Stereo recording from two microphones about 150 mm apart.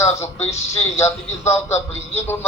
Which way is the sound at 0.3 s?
45° left (ahead or behind).